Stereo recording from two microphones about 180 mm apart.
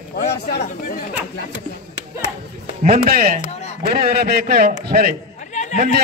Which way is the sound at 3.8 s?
60° right (ahead or behind).